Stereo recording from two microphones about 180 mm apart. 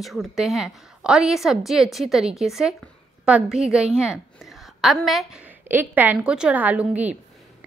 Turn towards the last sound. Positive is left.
turn(degrees=-10)  # may be behind; listen again after turning